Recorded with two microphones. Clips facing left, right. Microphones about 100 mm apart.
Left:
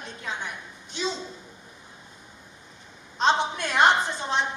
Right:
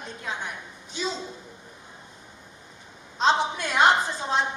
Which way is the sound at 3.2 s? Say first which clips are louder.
Even; 5° right (ahead or behind).